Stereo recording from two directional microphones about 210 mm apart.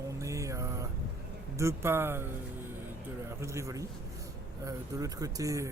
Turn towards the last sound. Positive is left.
turn(degrees=-15)  # may be behind; listen again after turning